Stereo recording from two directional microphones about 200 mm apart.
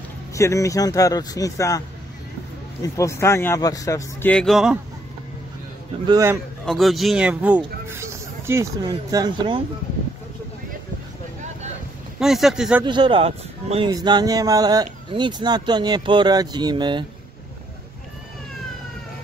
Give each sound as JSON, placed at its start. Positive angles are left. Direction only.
{"t": 0.3, "sound": "a man's voice", "side_deg": 15}
{"t": 2.8, "sound": "a man's voice", "side_deg": 15}
{"t": 6.0, "sound": "a man's voice", "side_deg": -15}
{"t": 6.6, "sound": "speech", "side_deg": 0}
{"t": 12.2, "sound": "speech", "side_deg": 0}
{"t": 12.8, "sound": "speech", "side_deg": -25}